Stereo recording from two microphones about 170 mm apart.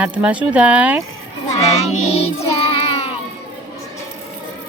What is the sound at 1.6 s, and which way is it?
Music, 40° left (ahead or behind).